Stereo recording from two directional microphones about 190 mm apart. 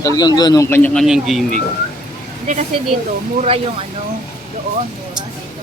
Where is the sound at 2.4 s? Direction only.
40° right (ahead or behind).